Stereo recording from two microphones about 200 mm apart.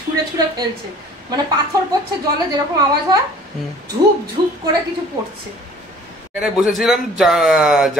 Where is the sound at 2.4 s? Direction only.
20° right (ahead or behind).